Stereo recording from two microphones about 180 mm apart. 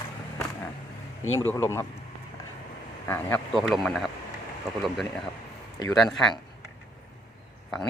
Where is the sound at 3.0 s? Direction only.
10° left (ahead or behind).